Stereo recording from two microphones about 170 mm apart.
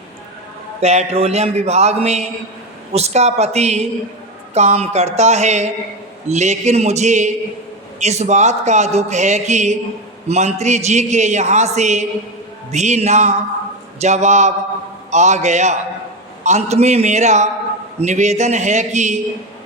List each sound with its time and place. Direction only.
0.8 s a man's voice: 40° right (ahead or behind)